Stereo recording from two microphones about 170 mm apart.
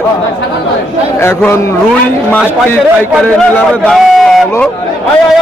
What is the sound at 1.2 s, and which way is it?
Speech, 15° left (ahead or behind).